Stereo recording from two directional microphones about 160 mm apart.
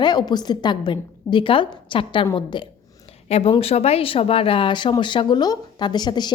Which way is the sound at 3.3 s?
40° left (ahead or behind).